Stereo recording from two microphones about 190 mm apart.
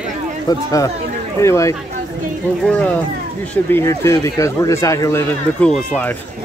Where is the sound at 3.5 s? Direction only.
10° left (ahead or behind).